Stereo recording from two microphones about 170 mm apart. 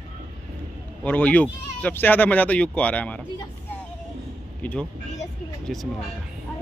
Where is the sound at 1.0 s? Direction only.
10° left (ahead or behind).